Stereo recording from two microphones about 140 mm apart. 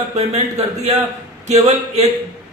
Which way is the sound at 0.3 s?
50° right (ahead or behind).